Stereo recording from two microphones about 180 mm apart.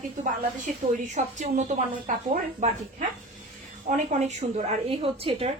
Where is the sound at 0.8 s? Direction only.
35° right (ahead or behind).